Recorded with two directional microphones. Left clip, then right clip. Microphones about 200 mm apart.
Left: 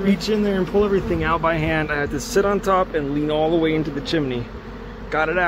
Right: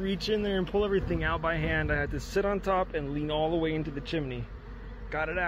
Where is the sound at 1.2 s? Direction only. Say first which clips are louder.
Left 10 dB; 20° right (ahead or behind).